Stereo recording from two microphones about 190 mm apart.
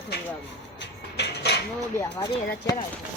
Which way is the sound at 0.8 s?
60° left (ahead or behind).